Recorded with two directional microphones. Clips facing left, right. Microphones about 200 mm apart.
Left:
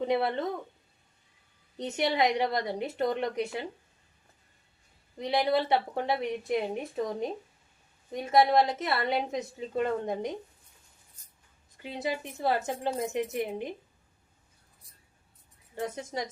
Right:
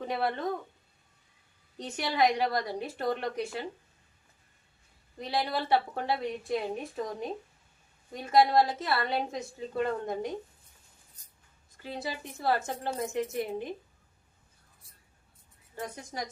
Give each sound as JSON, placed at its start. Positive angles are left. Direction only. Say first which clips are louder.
{"t": 0.0, "sound": "speech", "louder": "left 4 dB", "side_deg": 20}
{"t": 1.8, "sound": "a woman's voice", "louder": "left 1 dB", "side_deg": 20}
{"t": 5.1, "sound": "a woman's voice", "louder": "left 5 dB", "side_deg": 20}
{"t": 11.8, "sound": "a woman's voice", "louder": "left 4 dB", "side_deg": 20}
{"t": 15.7, "sound": "a woman's voice", "louder": "left 5 dB", "side_deg": 20}